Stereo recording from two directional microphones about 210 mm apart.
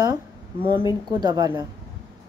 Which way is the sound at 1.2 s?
15° right (ahead or behind).